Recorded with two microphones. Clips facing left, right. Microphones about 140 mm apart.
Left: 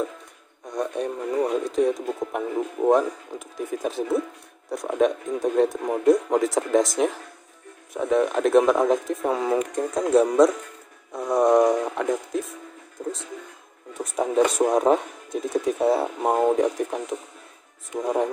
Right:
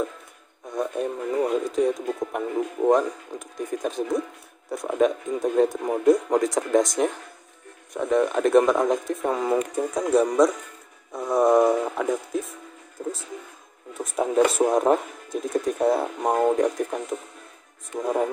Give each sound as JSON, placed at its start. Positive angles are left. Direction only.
{"t": 0.7, "sound": "speech", "side_deg": 0}